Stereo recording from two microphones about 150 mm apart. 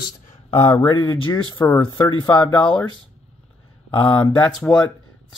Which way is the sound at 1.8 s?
25° left (ahead or behind).